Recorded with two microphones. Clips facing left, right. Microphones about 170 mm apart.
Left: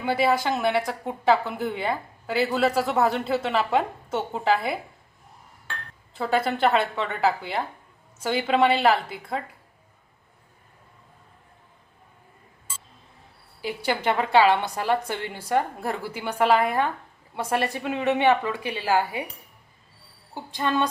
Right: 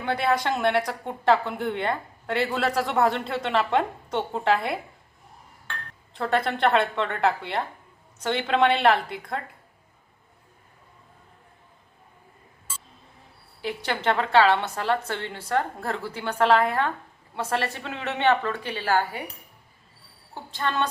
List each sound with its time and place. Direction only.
0.0 s a woman's voice: 5° left (ahead or behind)
6.1 s a woman's voice: 5° left (ahead or behind)
13.6 s a woman's voice: 10° left (ahead or behind)
20.3 s a woman's voice: 15° left (ahead or behind)